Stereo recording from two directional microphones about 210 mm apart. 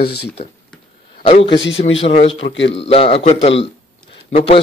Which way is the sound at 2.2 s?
60° left (ahead or behind).